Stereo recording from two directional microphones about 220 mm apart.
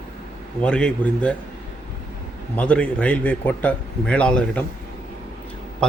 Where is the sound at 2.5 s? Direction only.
5° left (ahead or behind).